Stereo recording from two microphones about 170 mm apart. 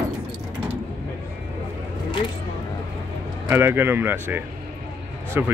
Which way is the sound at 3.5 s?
15° right (ahead or behind).